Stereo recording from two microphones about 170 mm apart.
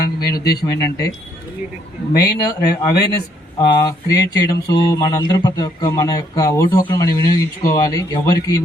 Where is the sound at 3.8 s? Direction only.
20° left (ahead or behind).